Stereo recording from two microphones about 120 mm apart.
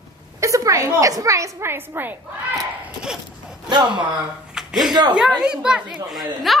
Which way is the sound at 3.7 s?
40° right (ahead or behind).